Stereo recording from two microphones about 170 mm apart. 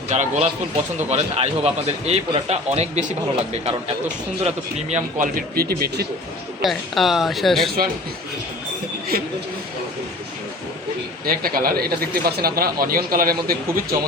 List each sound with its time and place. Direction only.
0.1 s a man's voice: 45° right (ahead or behind); by 6.1 s 65° right (ahead or behind)
6.6 s speech: centre (ahead or behind)
11.3 s speech: 60° right (ahead or behind)